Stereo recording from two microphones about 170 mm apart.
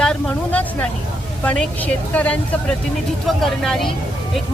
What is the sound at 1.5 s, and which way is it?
Speech, 10° left (ahead or behind).